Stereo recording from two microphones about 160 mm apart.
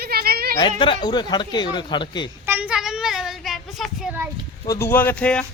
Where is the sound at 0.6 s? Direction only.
30° left (ahead or behind).